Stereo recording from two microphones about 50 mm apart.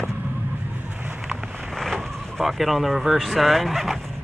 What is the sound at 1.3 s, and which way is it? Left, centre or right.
Vehicle, centre.